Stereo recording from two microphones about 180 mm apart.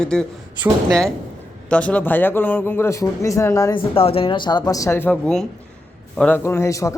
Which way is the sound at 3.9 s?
30° left (ahead or behind).